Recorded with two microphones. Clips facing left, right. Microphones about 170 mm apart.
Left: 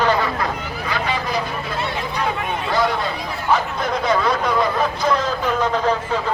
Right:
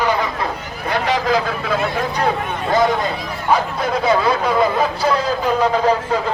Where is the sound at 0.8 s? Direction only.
70° right (ahead or behind); by 1.8 s 90° right.